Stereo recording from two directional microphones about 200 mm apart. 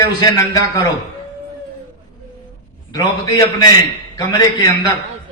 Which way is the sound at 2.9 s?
20° left (ahead or behind).